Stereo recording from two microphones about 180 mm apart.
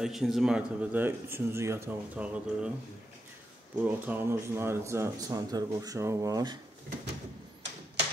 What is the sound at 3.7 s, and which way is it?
Speech, 10° right (ahead or behind).